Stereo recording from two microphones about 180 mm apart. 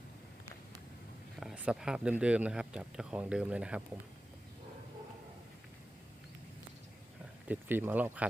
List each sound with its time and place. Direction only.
1.4 s speech: 5° right (ahead or behind)
7.4 s speech: 10° right (ahead or behind)